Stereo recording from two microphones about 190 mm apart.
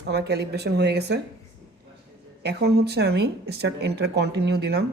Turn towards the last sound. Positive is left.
turn(degrees=-60)  # may be behind; listen again after turning